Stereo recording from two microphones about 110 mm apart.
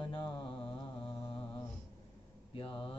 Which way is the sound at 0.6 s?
50° left (ahead or behind).